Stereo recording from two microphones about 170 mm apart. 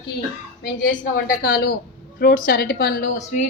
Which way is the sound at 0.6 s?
60° left (ahead or behind).